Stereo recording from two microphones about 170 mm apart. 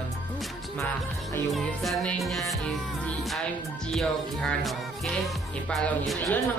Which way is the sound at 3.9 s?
Centre (ahead or behind).